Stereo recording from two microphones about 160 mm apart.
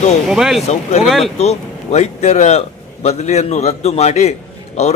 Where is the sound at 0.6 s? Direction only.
40° left (ahead or behind).